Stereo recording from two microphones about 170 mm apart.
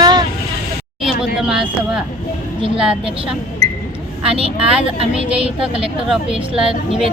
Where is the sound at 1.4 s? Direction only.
5° right (ahead or behind).